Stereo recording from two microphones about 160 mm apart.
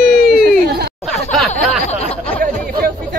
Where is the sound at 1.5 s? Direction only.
45° left (ahead or behind).